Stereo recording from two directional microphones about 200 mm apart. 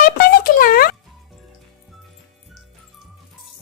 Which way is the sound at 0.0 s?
45° left (ahead or behind).